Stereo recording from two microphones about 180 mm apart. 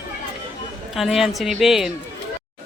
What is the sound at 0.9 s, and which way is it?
A woman's voice, centre (ahead or behind).